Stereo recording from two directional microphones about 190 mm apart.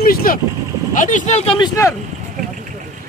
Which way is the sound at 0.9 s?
40° left (ahead or behind).